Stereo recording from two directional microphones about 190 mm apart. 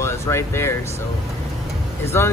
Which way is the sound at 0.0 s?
15° left (ahead or behind).